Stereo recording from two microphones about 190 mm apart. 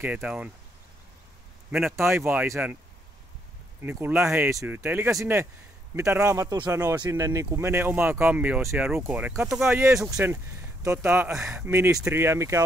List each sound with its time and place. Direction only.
0.0 s speech: 5° right (ahead or behind)
1.7 s speech: centre (ahead or behind)
2.0 s speech: 10° right (ahead or behind)
3.8 s speech: 10° right (ahead or behind)